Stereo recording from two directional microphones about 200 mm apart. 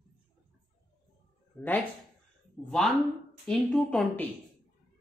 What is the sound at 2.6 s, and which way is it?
Speech, centre (ahead or behind).